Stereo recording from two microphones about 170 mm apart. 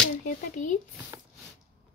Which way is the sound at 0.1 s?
45° left (ahead or behind).